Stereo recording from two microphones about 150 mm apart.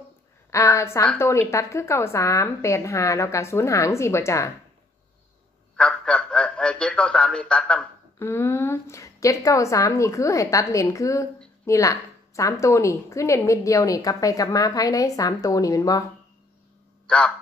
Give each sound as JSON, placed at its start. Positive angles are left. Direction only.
{"t": 0.5, "sound": "a woman's voice", "side_deg": 20}
{"t": 5.8, "sound": "a sound", "side_deg": 5}
{"t": 8.2, "sound": "a woman's voice", "side_deg": 15}
{"t": 17.1, "sound": "a man's voice", "side_deg": 5}